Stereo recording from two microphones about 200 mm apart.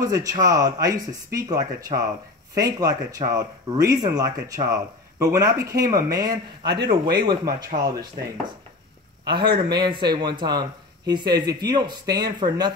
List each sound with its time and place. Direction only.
0.0 s speech: 15° right (ahead or behind)
9.3 s speech: 25° right (ahead or behind)